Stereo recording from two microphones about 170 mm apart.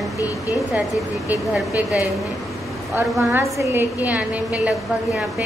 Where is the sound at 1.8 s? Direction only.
10° right (ahead or behind).